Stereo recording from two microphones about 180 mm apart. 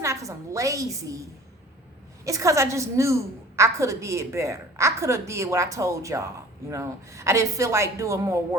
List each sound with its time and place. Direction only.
0.0 s a woman's voice: 15° right (ahead or behind)